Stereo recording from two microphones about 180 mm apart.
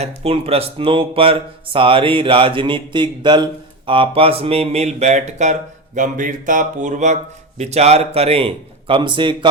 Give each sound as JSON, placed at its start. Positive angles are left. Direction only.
{"t": 0.0, "sound": "speech", "side_deg": -35}